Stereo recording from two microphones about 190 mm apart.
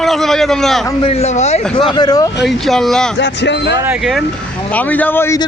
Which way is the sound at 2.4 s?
Centre (ahead or behind).